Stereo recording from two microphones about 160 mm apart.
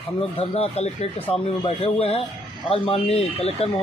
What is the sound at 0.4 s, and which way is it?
Speech, 40° left (ahead or behind).